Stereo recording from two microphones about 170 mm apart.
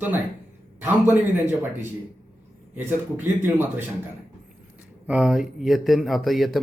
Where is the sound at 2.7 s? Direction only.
10° right (ahead or behind).